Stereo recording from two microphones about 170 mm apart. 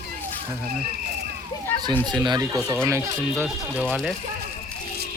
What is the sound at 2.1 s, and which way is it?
Speech, 25° right (ahead or behind).